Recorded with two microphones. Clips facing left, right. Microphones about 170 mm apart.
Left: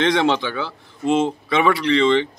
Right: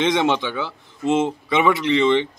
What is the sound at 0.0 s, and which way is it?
A man's voice, 20° right (ahead or behind).